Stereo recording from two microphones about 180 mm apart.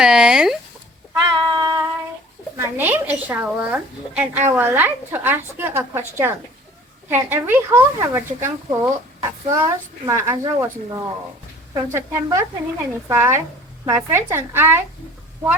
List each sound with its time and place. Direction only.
0.0 s speech: 5° right (ahead or behind)
1.1 s cat: 20° right (ahead or behind)
2.6 s a woman's voice: 10° right (ahead or behind)